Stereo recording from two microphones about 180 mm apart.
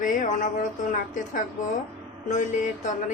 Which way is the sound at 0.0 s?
45° left (ahead or behind).